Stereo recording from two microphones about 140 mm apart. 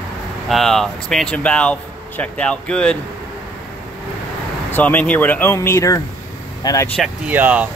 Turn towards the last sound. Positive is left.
turn(degrees=-10)  # may be behind; listen again after turning